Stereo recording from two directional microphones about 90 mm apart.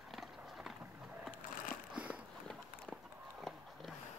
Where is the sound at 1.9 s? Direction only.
15° right (ahead or behind).